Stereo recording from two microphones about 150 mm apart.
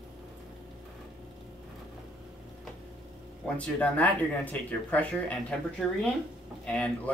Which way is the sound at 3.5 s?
10° left (ahead or behind).